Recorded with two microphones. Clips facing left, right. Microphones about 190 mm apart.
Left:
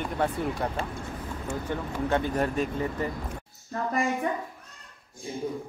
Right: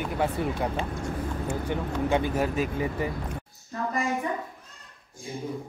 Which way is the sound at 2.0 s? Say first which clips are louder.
Even; 10° right (ahead or behind).